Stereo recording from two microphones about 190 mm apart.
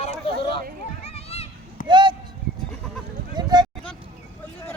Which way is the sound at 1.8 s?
25° right (ahead or behind).